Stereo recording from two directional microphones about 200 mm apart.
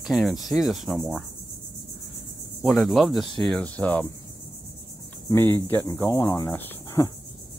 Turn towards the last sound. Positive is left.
turn(degrees=15)  # may be behind; listen again after turning